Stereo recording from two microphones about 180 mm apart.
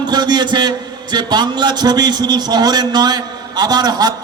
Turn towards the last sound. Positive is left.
turn(degrees=-20)  # may be behind; listen again after turning